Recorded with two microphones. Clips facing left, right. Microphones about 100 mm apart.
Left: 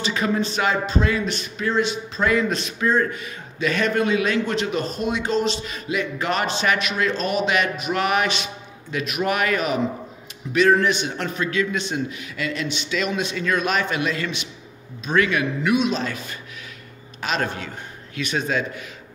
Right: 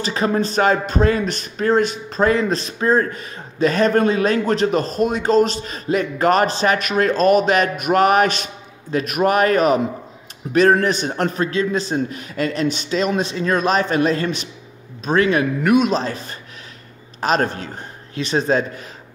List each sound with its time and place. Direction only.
0.0 s speech: 40° right (ahead or behind)
16.0 s speech: 35° right (ahead or behind)